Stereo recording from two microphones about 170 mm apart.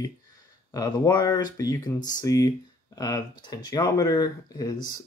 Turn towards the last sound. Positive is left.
turn(degrees=25)  # may be behind; listen again after turning